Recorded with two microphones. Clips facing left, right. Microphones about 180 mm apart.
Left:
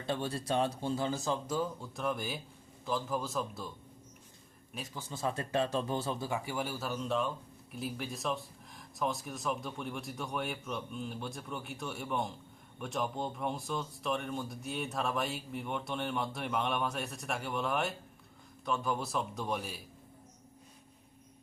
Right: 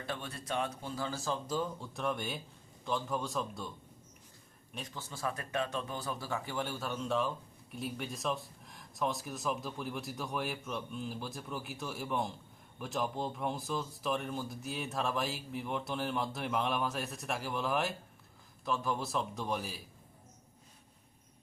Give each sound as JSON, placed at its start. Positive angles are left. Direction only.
{"t": 0.0, "sound": "speech", "side_deg": 30}
{"t": 1.5, "sound": "speech", "side_deg": 0}
{"t": 4.7, "sound": "speech", "side_deg": 5}
{"t": 5.0, "sound": "speech", "side_deg": 20}